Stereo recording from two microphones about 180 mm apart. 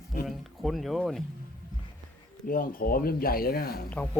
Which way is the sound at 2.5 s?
50° left (ahead or behind).